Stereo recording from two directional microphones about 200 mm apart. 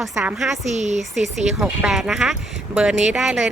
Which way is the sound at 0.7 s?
35° right (ahead or behind).